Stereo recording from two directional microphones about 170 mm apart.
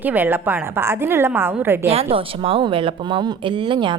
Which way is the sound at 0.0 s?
10° right (ahead or behind).